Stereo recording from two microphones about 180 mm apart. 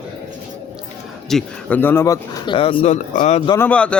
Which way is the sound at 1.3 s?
5° left (ahead or behind).